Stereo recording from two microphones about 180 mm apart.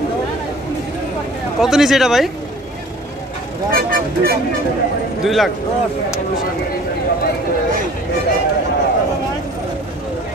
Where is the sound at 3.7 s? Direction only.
55° right (ahead or behind).